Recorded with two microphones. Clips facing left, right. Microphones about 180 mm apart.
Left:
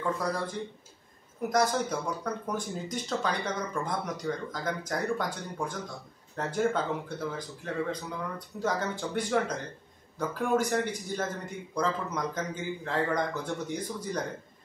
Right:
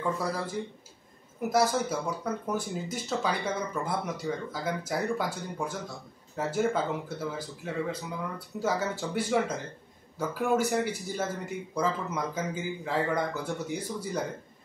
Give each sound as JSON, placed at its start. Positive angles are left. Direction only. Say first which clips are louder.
{"t": 0.0, "sound": "speech", "louder": "even", "side_deg": -5}